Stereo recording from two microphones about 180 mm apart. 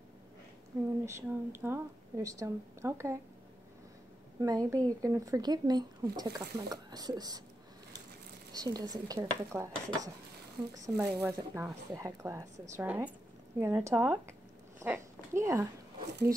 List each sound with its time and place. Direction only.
1.0 s a woman's voice: 15° right (ahead or behind)
4.4 s speech: 20° right (ahead or behind)
8.5 s a woman's voice: 20° right (ahead or behind)
14.8 s a sound: 15° right (ahead or behind)